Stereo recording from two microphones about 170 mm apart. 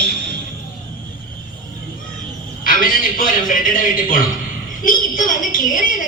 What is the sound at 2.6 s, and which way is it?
A man's voice, 55° left (ahead or behind).